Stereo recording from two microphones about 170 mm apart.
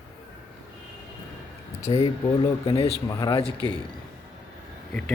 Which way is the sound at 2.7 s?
35° left (ahead or behind).